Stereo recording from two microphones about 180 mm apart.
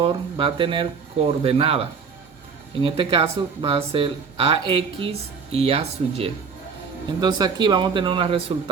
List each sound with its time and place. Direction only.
0.0 s speech: 30° right (ahead or behind)